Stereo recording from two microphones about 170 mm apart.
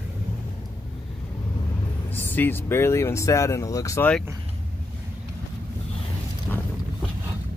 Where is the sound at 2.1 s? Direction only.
10° left (ahead or behind).